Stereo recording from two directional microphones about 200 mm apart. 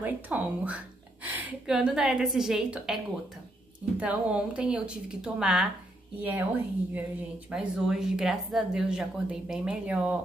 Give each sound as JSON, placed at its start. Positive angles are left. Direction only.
{"t": 0.0, "sound": "speech", "side_deg": -10}
{"t": 4.0, "sound": "speech", "side_deg": -5}